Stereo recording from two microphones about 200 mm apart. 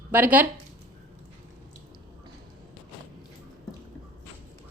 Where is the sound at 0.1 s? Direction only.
10° right (ahead or behind).